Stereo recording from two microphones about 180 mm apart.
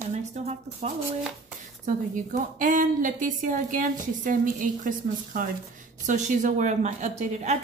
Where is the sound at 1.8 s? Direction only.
45° right (ahead or behind).